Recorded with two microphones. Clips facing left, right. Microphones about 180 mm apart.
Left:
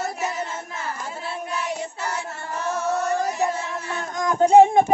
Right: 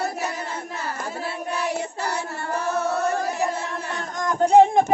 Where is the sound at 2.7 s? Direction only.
60° right (ahead or behind).